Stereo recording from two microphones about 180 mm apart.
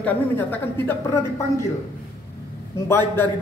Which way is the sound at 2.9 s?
10° left (ahead or behind).